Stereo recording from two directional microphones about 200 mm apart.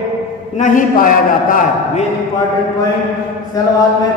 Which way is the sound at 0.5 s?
40° left (ahead or behind).